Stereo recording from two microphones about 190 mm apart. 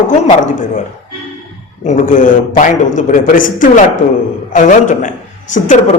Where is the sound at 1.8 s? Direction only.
40° left (ahead or behind).